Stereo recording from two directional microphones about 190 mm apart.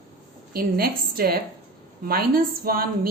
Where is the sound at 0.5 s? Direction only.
50° right (ahead or behind).